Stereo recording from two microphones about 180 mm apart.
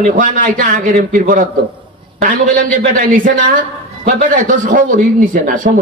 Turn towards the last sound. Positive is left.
turn(degrees=-50)  # may be behind; listen again after turning